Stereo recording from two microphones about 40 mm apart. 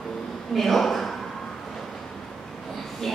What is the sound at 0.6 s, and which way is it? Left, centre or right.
Speech, centre.